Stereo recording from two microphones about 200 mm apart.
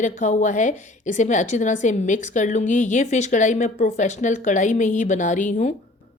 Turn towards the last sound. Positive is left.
turn(degrees=40)  # may be behind; listen again after turning